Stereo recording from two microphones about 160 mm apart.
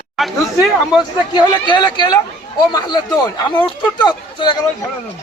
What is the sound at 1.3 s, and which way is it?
Speech, 30° left (ahead or behind).